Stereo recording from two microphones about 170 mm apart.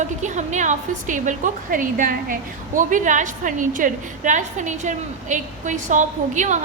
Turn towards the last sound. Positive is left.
turn(degrees=-45)  # may be behind; listen again after turning